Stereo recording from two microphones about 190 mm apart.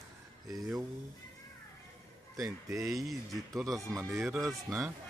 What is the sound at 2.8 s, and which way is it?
A man's voice, centre (ahead or behind).